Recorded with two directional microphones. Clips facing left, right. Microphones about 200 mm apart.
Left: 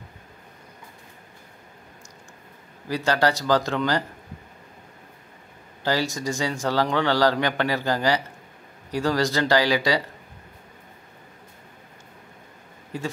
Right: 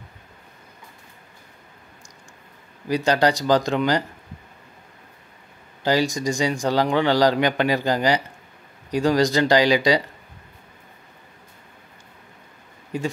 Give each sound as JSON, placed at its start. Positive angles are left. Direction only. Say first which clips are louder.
{"t": 2.9, "sound": "a man's voice", "louder": "right 3 dB", "side_deg": -15}
{"t": 5.9, "sound": "a man's voice", "louder": "right 4 dB", "side_deg": -15}
{"t": 12.9, "sound": "speech", "louder": "right 4 dB", "side_deg": -15}